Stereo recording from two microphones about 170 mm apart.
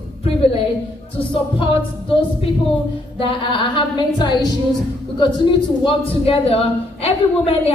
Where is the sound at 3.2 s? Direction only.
30° left (ahead or behind).